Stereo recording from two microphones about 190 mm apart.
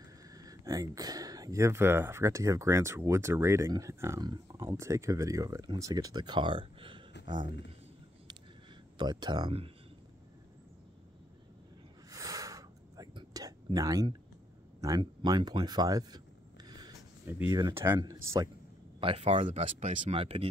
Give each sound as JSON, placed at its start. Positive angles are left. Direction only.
{"t": 0.3, "sound": "speech", "side_deg": -20}
{"t": 8.9, "sound": "speech", "side_deg": -20}
{"t": 12.1, "sound": "a sound", "side_deg": -15}
{"t": 17.3, "sound": "speech", "side_deg": -15}
{"t": 18.9, "sound": "speech", "side_deg": -30}